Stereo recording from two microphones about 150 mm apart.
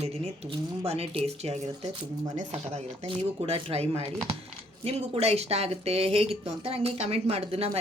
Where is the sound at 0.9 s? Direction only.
40° right (ahead or behind).